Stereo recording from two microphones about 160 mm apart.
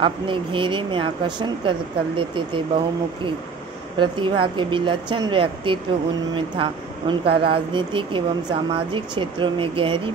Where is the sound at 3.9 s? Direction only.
30° right (ahead or behind).